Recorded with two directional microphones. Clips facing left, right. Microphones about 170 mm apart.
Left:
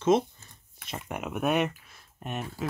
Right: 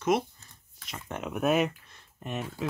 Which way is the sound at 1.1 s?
5° left (ahead or behind).